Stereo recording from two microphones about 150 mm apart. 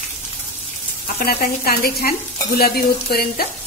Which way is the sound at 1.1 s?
80° left.